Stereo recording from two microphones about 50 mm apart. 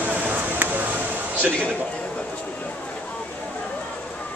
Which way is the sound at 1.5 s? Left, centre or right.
Left.